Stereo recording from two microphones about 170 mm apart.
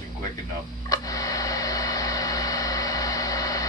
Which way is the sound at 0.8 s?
20° left (ahead or behind).